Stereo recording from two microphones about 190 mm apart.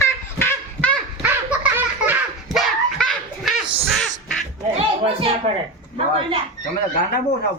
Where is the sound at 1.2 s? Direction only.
10° right (ahead or behind).